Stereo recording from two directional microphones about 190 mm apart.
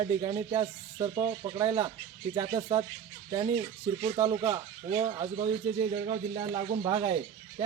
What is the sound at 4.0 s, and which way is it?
Speech, 20° right (ahead or behind).